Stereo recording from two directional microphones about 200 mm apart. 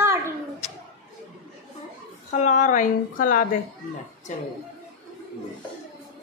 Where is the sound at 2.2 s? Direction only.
35° left (ahead or behind).